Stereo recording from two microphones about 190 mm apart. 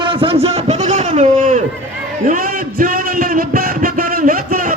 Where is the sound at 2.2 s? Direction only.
45° right (ahead or behind).